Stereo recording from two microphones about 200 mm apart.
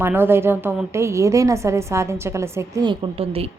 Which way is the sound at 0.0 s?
10° right (ahead or behind).